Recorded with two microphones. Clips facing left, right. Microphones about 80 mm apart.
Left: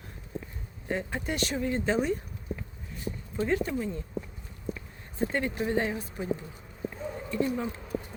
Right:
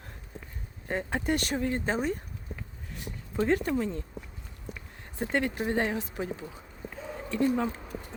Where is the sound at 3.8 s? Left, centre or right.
Right.